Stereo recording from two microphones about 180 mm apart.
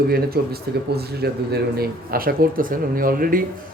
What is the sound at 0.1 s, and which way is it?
Speech, 60° right (ahead or behind).